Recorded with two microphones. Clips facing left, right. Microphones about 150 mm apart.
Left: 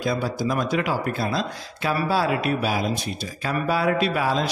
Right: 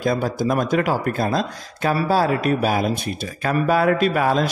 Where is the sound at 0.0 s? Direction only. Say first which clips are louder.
Right 4 dB; 50° right (ahead or behind).